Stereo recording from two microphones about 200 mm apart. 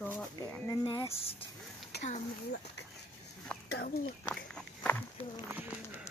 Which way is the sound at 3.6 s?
50° left (ahead or behind).